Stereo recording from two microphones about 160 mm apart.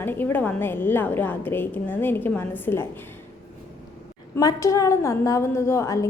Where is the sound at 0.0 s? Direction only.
15° left (ahead or behind).